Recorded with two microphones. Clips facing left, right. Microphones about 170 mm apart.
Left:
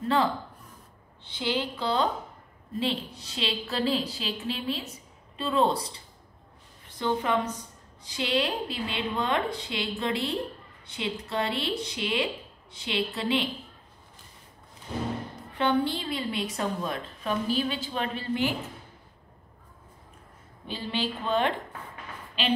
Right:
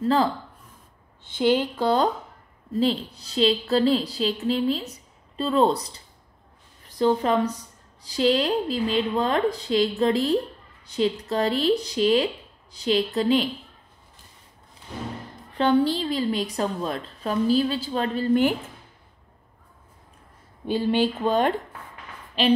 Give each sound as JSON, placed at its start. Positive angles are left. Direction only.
{"t": 1.2, "sound": "speech", "side_deg": -50}
{"t": 2.8, "sound": "a woman's voice", "side_deg": -35}
{"t": 6.9, "sound": "a woman's voice", "side_deg": -35}
{"t": 15.5, "sound": "a woman's voice", "side_deg": -35}
{"t": 20.6, "sound": "a woman's voice", "side_deg": -50}